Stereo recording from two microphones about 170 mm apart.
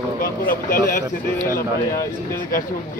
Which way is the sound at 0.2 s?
55° left (ahead or behind).